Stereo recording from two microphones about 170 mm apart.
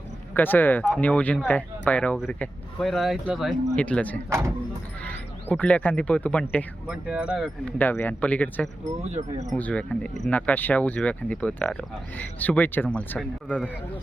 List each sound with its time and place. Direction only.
0.3 s speech: 10° left (ahead or behind)
4.3 s speech: 15° right (ahead or behind)
5.0 s speech: 10° left (ahead or behind)
6.8 s speech: 5° right (ahead or behind)
7.8 s speech: 10° left (ahead or behind)
9.0 s speech: 40° right (ahead or behind)
9.5 s speech: 10° left (ahead or behind)